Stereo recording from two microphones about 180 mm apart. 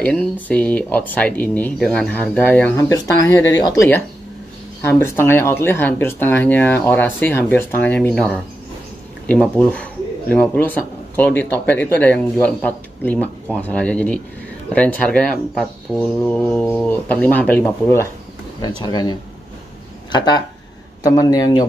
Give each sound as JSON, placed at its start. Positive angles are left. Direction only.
{"t": 0.0, "sound": "speech", "side_deg": 5}
{"t": 9.3, "sound": "a man's voice", "side_deg": 5}